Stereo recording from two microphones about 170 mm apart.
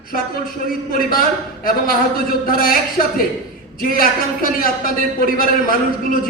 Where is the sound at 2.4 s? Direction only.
55° left (ahead or behind).